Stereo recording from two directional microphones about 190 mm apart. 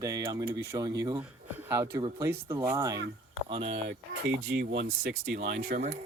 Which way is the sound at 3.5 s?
30° right (ahead or behind).